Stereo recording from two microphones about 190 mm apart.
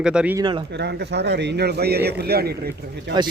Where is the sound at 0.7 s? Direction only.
60° right (ahead or behind).